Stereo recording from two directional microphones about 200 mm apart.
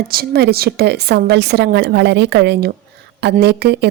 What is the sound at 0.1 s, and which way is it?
A woman's voice, 50° right (ahead or behind).